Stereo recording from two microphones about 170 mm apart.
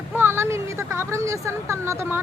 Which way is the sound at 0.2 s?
15° right (ahead or behind).